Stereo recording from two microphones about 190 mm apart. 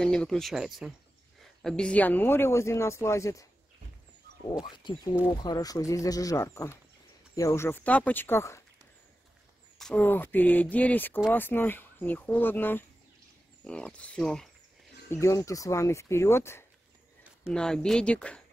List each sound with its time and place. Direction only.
0.0 s speech: 5° left (ahead or behind)
4.5 s speech: 25° left (ahead or behind)
9.8 s speech: 5° left (ahead or behind)
15.0 s speech: 15° left (ahead or behind)
17.2 s speech: centre (ahead or behind)